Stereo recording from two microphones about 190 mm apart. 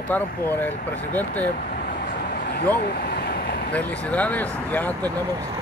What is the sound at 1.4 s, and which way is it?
Vehicle, 50° left (ahead or behind).